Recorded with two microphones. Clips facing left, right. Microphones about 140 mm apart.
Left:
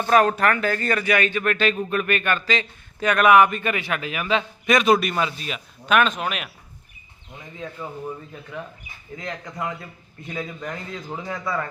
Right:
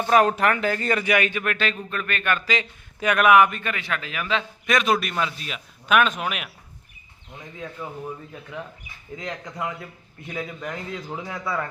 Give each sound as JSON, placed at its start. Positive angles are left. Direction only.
{"t": 0.1, "sound": "speech", "side_deg": -15}
{"t": 1.9, "sound": "speech", "side_deg": 10}
{"t": 2.5, "sound": "a man's voice", "side_deg": -10}
{"t": 9.1, "sound": "speech", "side_deg": -15}